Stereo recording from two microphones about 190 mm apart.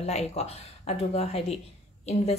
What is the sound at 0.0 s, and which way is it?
Speech, 35° left (ahead or behind).